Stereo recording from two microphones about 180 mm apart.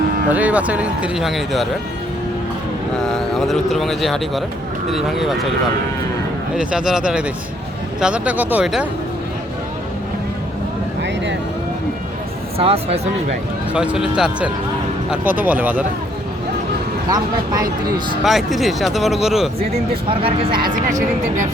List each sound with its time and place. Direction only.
0.3 s speech: 10° right (ahead or behind)
2.9 s speech: 5° left (ahead or behind)
6.6 s speech: 5° right (ahead or behind)
12.5 s speech: 35° right (ahead or behind)
13.7 s speech: 5° right (ahead or behind)
17.1 s speech: 20° right (ahead or behind)
18.2 s speech: centre (ahead or behind)
20.1 s speech: 30° right (ahead or behind)
20.9 s speech: 45° right (ahead or behind)